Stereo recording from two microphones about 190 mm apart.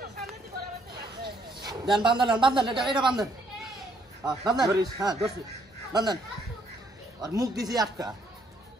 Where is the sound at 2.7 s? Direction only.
Centre (ahead or behind).